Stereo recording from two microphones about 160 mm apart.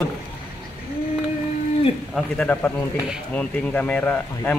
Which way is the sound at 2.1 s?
10° left (ahead or behind).